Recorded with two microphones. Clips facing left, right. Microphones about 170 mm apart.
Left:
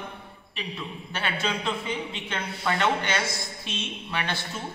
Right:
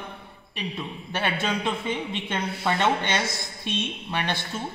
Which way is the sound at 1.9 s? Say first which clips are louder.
Right 3 dB; 20° right (ahead or behind).